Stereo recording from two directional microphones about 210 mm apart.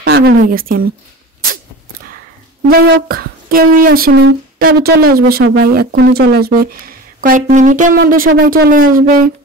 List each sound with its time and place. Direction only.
0.0 s speech: 50° right (ahead or behind)
2.7 s speech: 45° right (ahead or behind)